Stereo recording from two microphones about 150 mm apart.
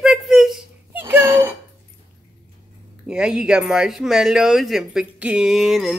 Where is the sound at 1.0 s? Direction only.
15° right (ahead or behind).